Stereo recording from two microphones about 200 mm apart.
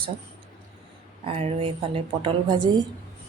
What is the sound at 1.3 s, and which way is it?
A woman's voice, 30° right (ahead or behind).